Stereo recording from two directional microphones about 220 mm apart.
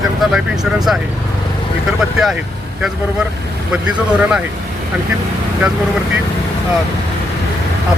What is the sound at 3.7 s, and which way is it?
Speech, 5° right (ahead or behind).